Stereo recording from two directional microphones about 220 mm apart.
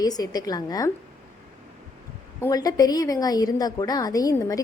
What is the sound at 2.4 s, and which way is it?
Speech, 15° left (ahead or behind).